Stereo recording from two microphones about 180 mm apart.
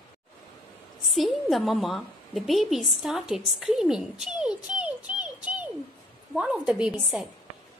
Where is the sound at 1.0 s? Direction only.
Centre (ahead or behind).